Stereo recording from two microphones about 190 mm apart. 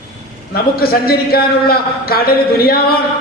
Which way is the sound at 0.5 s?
55° left (ahead or behind).